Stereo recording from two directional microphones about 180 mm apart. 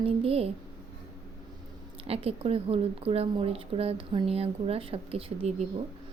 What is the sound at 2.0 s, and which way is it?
A woman's voice, 35° right (ahead or behind).